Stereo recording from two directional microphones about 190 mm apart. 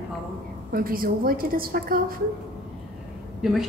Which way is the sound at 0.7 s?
50° right (ahead or behind).